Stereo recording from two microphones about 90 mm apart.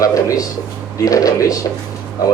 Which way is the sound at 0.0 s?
40° left (ahead or behind).